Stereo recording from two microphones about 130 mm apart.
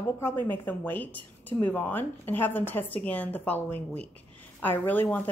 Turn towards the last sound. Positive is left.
turn(degrees=15)  # may be behind; listen again after turning